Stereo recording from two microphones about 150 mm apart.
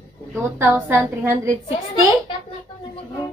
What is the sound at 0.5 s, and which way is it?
Speech, 15° right (ahead or behind).